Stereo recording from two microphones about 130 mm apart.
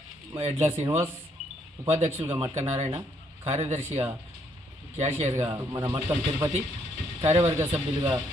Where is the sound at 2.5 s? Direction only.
65° right (ahead or behind).